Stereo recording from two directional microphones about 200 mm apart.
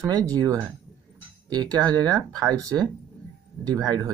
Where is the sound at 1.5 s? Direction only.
20° right (ahead or behind).